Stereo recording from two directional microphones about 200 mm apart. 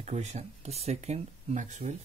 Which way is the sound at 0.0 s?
35° right (ahead or behind).